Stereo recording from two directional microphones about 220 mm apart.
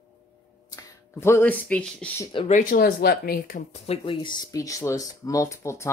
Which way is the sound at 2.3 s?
25° left (ahead or behind).